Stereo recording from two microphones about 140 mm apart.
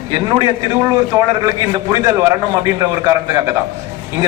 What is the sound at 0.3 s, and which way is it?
A man's voice, 30° right (ahead or behind).